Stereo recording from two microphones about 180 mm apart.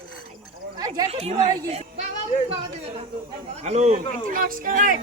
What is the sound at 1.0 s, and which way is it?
Speech, 35° right (ahead or behind).